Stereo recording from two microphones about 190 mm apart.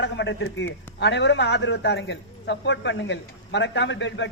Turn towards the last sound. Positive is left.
turn(degrees=75)  # may be behind; listen again after turning